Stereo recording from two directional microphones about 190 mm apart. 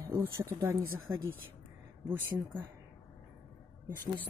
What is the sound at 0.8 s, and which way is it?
Speech, 90° right.